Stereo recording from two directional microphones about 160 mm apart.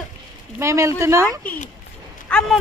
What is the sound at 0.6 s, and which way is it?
Speech, 20° right (ahead or behind).